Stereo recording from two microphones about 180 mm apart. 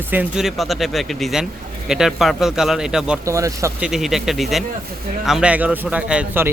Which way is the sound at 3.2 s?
15° right (ahead or behind).